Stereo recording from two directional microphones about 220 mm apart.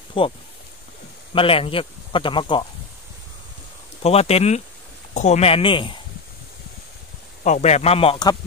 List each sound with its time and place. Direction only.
0.2 s speech: 25° left (ahead or behind)
4.0 s speech: 30° left (ahead or behind)
7.4 s speech: 30° left (ahead or behind)